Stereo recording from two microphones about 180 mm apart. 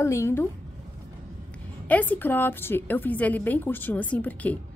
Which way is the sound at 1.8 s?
10° left (ahead or behind).